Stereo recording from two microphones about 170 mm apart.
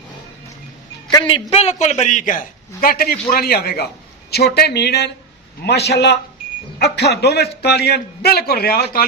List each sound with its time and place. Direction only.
1.1 s a man's voice: 30° left (ahead or behind); by 9.0 s 60° left (ahead or behind)